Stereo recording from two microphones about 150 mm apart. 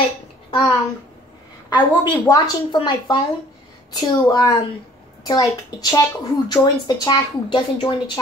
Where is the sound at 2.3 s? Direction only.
30° left (ahead or behind).